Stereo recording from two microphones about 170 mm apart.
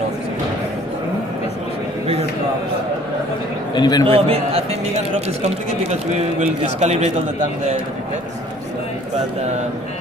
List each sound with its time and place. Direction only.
3.7 s a man's voice: 25° left (ahead or behind)
4.0 s speech: 35° right (ahead or behind)